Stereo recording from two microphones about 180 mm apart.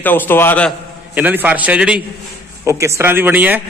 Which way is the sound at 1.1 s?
10° right (ahead or behind).